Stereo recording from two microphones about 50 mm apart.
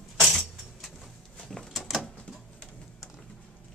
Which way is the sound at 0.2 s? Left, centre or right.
Centre.